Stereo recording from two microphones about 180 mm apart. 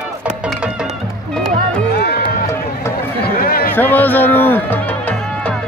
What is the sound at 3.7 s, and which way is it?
Music, 10° left (ahead or behind).